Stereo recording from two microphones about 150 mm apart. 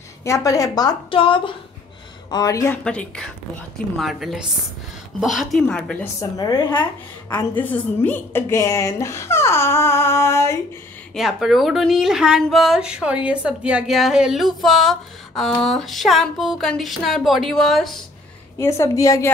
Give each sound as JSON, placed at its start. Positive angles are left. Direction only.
{"t": 0.2, "sound": "a woman's voice", "side_deg": 20}
{"t": 2.3, "sound": "a woman's voice", "side_deg": 25}
{"t": 2.8, "sound": "a woman's voice", "side_deg": 5}
{"t": 6.3, "sound": "a woman's voice", "side_deg": 25}
{"t": 7.3, "sound": "a woman's voice", "side_deg": 10}
{"t": 11.1, "sound": "a woman's voice", "side_deg": 0}
{"t": 18.6, "sound": "a woman's voice", "side_deg": 20}